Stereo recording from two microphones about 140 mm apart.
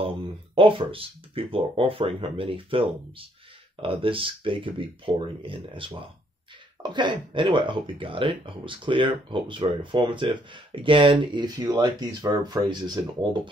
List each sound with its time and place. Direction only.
0.6 s speech: 40° right (ahead or behind)